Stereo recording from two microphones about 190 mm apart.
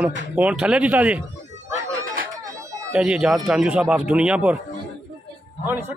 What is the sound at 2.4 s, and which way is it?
Chatter, 15° right (ahead or behind).